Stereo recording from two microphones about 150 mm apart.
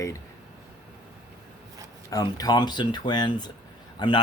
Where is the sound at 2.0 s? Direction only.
25° left (ahead or behind).